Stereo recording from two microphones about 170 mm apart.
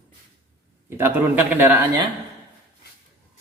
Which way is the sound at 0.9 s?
10° right (ahead or behind).